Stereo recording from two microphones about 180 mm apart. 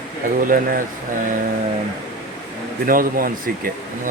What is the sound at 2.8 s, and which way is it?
Speech, 50° right (ahead or behind).